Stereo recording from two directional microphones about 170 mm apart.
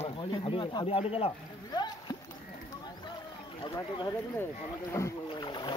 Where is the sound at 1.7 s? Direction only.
25° left (ahead or behind).